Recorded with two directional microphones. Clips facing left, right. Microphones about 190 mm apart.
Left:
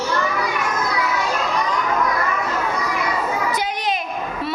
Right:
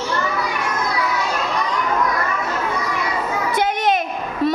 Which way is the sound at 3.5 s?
50° right (ahead or behind).